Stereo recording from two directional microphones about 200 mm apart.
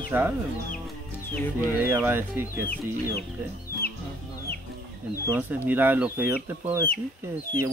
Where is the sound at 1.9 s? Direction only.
10° right (ahead or behind).